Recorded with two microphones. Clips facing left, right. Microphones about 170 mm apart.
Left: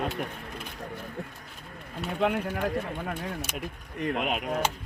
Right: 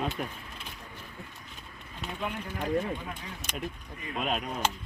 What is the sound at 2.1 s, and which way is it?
Speech, 65° left (ahead or behind).